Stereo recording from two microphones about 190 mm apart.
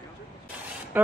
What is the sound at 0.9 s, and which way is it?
Speech, 10° right (ahead or behind).